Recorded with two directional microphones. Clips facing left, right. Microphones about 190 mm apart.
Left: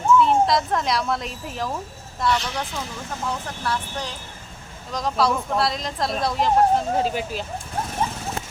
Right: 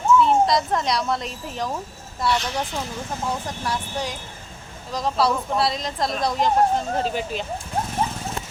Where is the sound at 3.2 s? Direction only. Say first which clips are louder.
Even; 15° right (ahead or behind).